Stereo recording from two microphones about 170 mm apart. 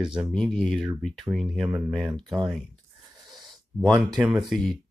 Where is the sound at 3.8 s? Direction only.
5° right (ahead or behind).